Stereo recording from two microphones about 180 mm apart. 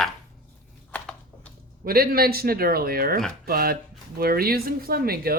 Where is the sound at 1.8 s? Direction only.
55° right (ahead or behind).